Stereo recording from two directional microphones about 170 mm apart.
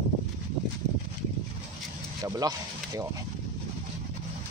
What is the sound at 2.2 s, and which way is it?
Speech, 20° right (ahead or behind).